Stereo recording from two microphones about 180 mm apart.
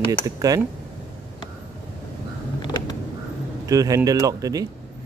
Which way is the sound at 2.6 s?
25° left (ahead or behind).